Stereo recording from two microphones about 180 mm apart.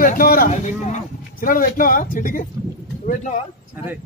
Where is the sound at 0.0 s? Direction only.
50° left (ahead or behind).